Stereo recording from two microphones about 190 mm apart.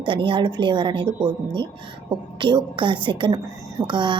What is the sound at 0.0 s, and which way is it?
A woman's voice, 25° right (ahead or behind).